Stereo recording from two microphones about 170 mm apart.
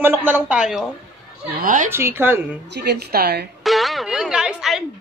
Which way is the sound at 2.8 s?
70° right (ahead or behind).